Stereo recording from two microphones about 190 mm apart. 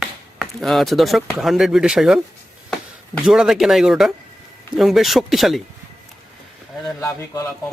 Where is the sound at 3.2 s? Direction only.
5° right (ahead or behind).